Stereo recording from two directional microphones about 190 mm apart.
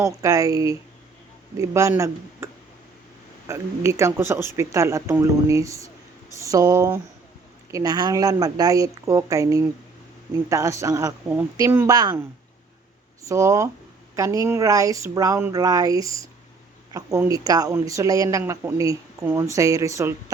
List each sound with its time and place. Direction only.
0.0 s speech: 15° right (ahead or behind)
13.2 s speech: 15° right (ahead or behind)